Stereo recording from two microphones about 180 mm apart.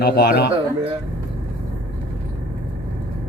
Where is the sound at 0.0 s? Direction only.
65° left (ahead or behind).